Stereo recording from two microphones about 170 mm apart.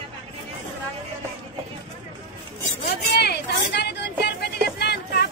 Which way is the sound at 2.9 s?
75° left (ahead or behind).